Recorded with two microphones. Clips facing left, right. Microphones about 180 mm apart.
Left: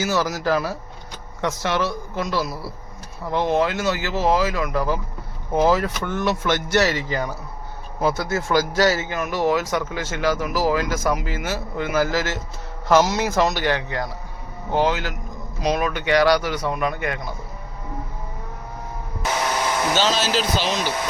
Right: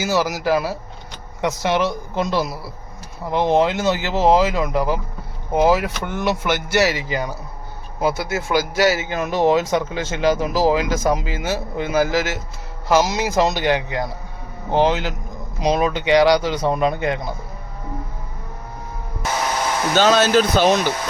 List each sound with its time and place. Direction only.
0.0 s speech: 10° right (ahead or behind)
9.0 s speech: 25° right (ahead or behind)
20.0 s speech: 55° right (ahead or behind)